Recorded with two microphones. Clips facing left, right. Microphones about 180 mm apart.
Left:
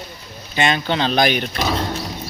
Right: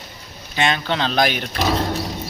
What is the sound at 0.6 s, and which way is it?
Speech, centre (ahead or behind).